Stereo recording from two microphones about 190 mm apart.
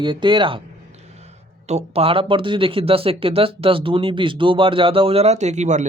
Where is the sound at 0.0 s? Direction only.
25° right (ahead or behind).